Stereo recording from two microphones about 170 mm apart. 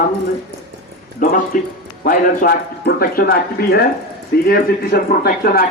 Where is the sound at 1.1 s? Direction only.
50° left (ahead or behind).